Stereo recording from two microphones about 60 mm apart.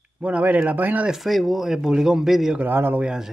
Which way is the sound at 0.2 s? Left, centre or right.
Right.